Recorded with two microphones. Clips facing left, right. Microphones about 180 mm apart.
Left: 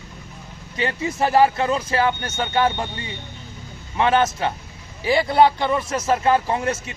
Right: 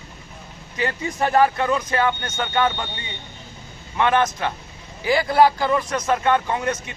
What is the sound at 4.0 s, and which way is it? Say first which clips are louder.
Speech: left 1 dB; 25° left (ahead or behind).